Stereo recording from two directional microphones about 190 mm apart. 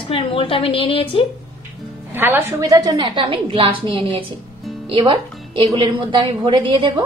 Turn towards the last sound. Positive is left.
turn(degrees=-25)  # may be behind; listen again after turning